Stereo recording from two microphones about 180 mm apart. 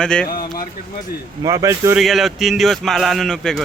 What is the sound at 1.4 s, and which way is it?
Speech, 15° right (ahead or behind).